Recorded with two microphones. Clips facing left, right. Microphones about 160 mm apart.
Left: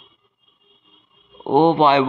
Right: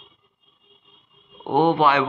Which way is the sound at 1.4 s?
25° left (ahead or behind).